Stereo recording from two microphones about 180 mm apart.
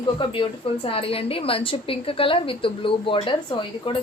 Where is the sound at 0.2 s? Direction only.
30° left (ahead or behind).